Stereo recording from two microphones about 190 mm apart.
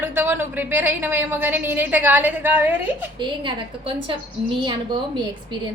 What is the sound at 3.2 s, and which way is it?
Speech, 25° right (ahead or behind).